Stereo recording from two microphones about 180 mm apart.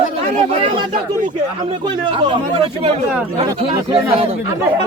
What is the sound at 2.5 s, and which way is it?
Speech, 30° right (ahead or behind).